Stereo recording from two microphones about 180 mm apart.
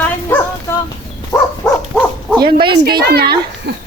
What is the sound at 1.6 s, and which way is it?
Dog, 5° left (ahead or behind).